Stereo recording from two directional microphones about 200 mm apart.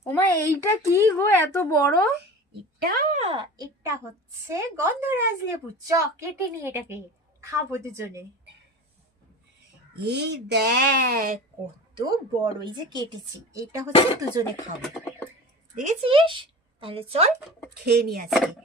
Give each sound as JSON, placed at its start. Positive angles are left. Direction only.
{"t": 0.0, "sound": "speech", "side_deg": 10}
{"t": 2.8, "sound": "speech", "side_deg": -45}
{"t": 3.2, "sound": "a woman's voice", "side_deg": -25}
{"t": 10.1, "sound": "speech", "side_deg": -55}
{"t": 11.9, "sound": "a woman's voice", "side_deg": -20}
{"t": 14.8, "sound": "a sound", "side_deg": 5}
{"t": 15.7, "sound": "speech", "side_deg": -35}
{"t": 17.8, "sound": "speech", "side_deg": -50}
{"t": 18.3, "sound": "speech", "side_deg": 0}